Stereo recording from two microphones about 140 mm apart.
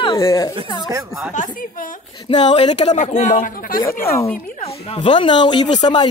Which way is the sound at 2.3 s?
50° left (ahead or behind).